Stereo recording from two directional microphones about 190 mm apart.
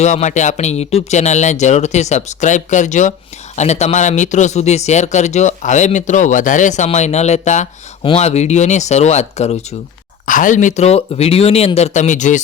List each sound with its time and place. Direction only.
0.0 s speech: 35° left (ahead or behind)